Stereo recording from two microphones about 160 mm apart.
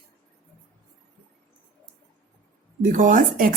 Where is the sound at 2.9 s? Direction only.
55° right (ahead or behind).